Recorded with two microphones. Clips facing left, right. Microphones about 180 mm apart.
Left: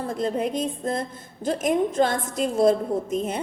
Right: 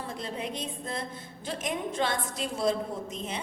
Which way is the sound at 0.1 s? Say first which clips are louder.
Left 12 dB; 45° left (ahead or behind).